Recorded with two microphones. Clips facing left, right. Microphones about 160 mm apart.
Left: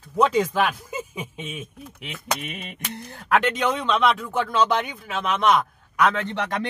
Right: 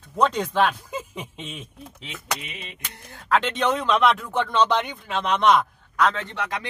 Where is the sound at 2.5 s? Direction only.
55° left (ahead or behind).